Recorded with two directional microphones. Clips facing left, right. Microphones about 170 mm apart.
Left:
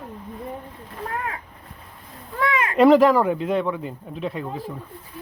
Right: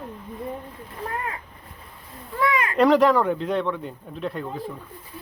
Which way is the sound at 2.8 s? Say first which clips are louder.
Left 3 dB; 5° left (ahead or behind).